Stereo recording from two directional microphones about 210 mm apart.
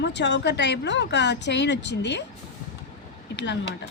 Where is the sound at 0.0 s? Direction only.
55° left (ahead or behind).